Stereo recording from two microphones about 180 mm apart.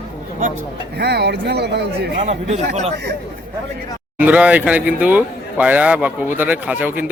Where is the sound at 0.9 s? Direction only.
65° right (ahead or behind).